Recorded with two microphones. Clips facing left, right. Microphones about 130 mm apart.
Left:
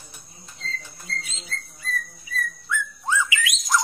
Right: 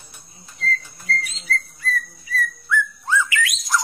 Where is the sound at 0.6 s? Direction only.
25° left (ahead or behind).